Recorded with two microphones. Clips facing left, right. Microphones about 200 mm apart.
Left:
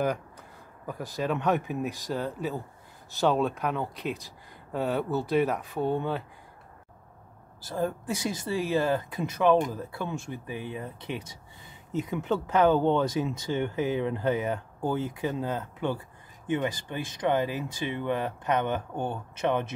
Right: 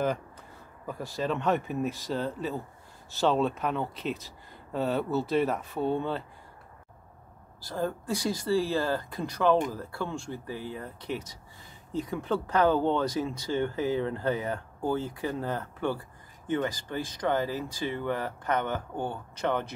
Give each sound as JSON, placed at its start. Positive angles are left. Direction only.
{"t": 0.8, "sound": "speech", "side_deg": 15}
{"t": 1.5, "sound": "speech", "side_deg": 0}
{"t": 1.9, "sound": "speech", "side_deg": 15}
{"t": 5.1, "sound": "speech", "side_deg": 15}
{"t": 5.5, "sound": "speech", "side_deg": 0}
{"t": 5.8, "sound": "speech", "side_deg": 15}
{"t": 7.7, "sound": "speech", "side_deg": 15}